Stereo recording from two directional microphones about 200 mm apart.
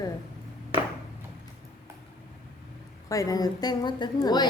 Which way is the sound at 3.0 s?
15° left (ahead or behind).